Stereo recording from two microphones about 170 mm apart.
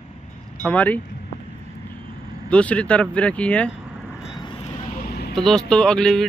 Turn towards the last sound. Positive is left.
turn(degrees=5)  # may be behind; listen again after turning